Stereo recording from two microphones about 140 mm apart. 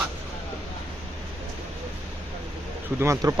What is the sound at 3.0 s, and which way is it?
Speech, 20° right (ahead or behind).